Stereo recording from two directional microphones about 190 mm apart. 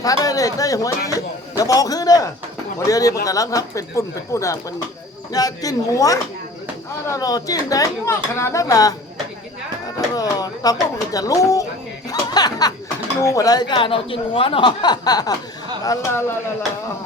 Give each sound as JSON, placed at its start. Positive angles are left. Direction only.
{"t": 0.0, "sound": "speech", "side_deg": 20}
{"t": 10.2, "sound": "speech", "side_deg": 20}